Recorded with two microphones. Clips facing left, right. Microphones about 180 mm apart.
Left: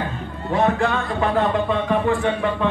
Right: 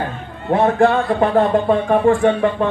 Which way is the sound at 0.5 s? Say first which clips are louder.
Right 6 dB; 55° right (ahead or behind).